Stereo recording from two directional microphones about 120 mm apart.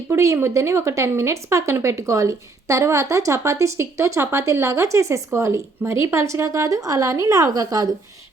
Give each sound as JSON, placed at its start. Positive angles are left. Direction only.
{"t": 0.1, "sound": "speech", "side_deg": -25}